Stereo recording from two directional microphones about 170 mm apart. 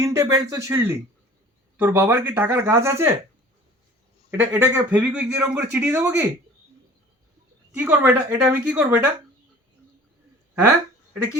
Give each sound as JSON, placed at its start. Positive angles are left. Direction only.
{"t": 0.0, "sound": "speech", "side_deg": -20}
{"t": 4.3, "sound": "speech", "side_deg": -15}
{"t": 7.8, "sound": "speech", "side_deg": -10}